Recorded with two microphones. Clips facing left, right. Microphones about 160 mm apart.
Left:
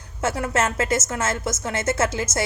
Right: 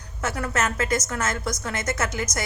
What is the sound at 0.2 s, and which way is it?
A woman's voice, 25° left (ahead or behind).